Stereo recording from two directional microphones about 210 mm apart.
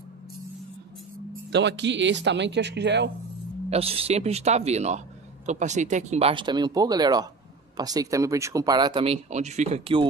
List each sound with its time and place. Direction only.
1.5 s speech: 55° right (ahead or behind)
3.7 s speech: 25° right (ahead or behind)